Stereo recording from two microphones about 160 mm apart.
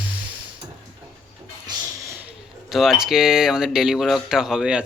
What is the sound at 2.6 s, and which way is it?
Speech, centre (ahead or behind).